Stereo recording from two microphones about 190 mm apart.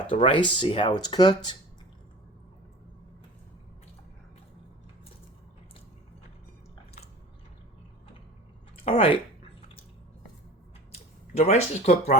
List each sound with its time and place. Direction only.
0.1 s speech: 25° left (ahead or behind)
8.8 s a sound: 30° left (ahead or behind)
10.9 s speech: 35° left (ahead or behind)